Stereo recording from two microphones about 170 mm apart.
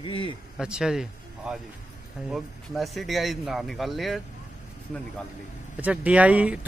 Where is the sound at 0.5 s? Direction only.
5° right (ahead or behind).